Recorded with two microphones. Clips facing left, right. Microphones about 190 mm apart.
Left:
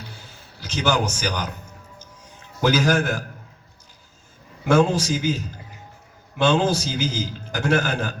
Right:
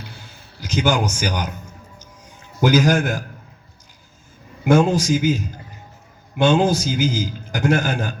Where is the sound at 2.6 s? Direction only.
15° right (ahead or behind).